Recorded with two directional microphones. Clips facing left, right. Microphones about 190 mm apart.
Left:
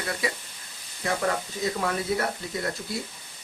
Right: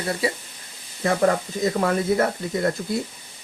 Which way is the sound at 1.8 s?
45° right (ahead or behind).